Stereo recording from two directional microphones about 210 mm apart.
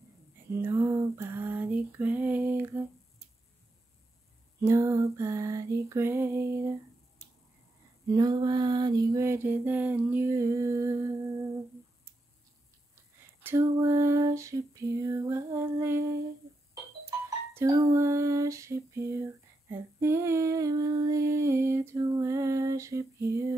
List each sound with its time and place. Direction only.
0.5 s female singing: 10° right (ahead or behind)
4.6 s female singing: 15° right (ahead or behind)
7.2 s finger snapping: 30° left (ahead or behind)
8.1 s female singing: 20° right (ahead or behind)
12.9 s female singing: 10° right (ahead or behind)
17.6 s female singing: 15° right (ahead or behind)